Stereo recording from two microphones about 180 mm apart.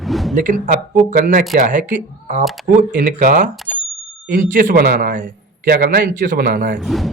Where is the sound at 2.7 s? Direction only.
45° right (ahead or behind).